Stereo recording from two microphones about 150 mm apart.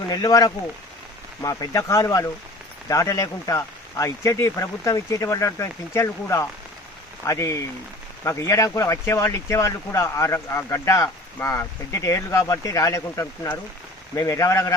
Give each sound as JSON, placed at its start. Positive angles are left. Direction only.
{"t": 0.1, "sound": "speech", "side_deg": 25}